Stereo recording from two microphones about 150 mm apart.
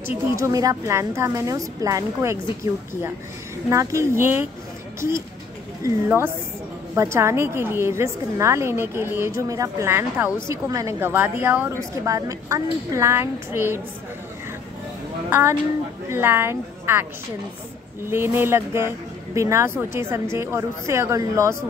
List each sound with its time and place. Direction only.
0.4 s a woman's voice: 25° right (ahead or behind)
5.9 s a woman's voice: 15° right (ahead or behind)
15.2 s a woman's voice: 15° right (ahead or behind)
18.0 s a woman's voice: 15° right (ahead or behind)